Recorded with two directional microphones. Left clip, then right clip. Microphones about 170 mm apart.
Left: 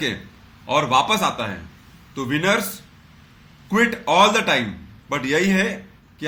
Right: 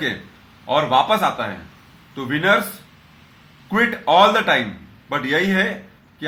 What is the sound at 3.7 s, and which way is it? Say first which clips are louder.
A man's voice: right 2 dB; 15° left (ahead or behind).